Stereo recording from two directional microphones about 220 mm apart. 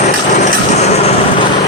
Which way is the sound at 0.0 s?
30° left (ahead or behind).